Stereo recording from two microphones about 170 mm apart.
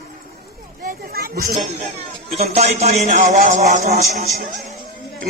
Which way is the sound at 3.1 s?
50° right (ahead or behind).